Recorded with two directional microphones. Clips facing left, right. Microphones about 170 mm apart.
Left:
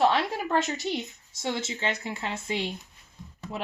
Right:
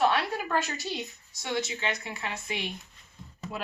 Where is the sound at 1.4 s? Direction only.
25° left (ahead or behind).